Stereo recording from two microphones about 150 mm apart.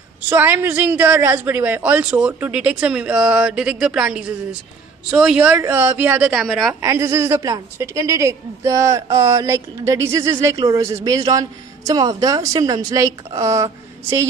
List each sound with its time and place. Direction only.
0.3 s a woman's voice: 15° right (ahead or behind)
6.7 s a woman's voice: 20° right (ahead or behind)